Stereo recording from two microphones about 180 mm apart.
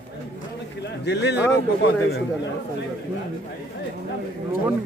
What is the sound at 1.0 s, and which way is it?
A man's voice, 70° left (ahead or behind).